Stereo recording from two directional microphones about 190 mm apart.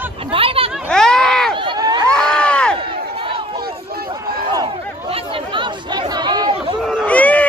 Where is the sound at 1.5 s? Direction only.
25° right (ahead or behind).